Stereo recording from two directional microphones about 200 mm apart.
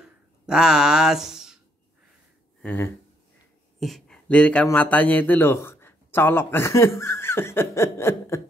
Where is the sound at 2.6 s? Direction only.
10° left (ahead or behind).